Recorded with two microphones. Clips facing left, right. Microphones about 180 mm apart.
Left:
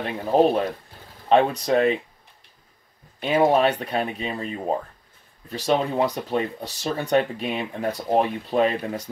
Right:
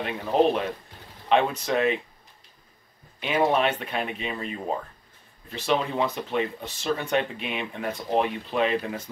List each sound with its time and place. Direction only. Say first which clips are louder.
0.0 s speech: left 3 dB; 40° left (ahead or behind)
3.2 s speech: left 4 dB; 35° left (ahead or behind)